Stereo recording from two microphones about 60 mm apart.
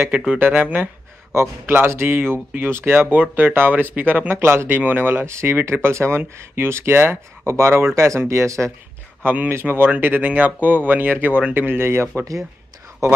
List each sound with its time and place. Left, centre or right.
0.4 s speech: right
1.3 s speech: right
4.4 s speech: right
9.2 s speech: right